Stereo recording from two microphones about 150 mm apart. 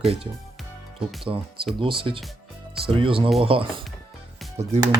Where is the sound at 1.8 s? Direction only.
35° right (ahead or behind).